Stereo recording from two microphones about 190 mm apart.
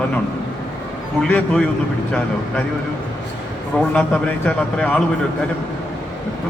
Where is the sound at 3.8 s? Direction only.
5° left (ahead or behind).